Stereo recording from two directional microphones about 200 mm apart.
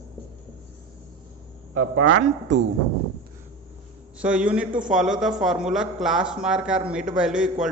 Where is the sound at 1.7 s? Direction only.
90° right.